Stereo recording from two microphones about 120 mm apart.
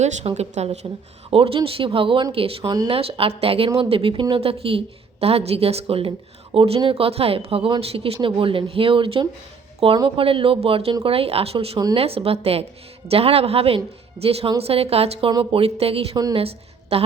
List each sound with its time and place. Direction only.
0.0 s a woman's voice: 70° right (ahead or behind)
1.3 s a woman's voice: 50° right (ahead or behind)
2.6 s speech: 35° right (ahead or behind)
2.9 s a woman's voice: 50° right (ahead or behind)